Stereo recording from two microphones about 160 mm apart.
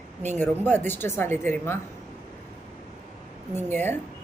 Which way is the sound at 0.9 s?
15° left (ahead or behind).